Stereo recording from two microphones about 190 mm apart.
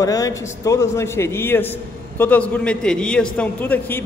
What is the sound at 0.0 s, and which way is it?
A man's voice, 15° left (ahead or behind).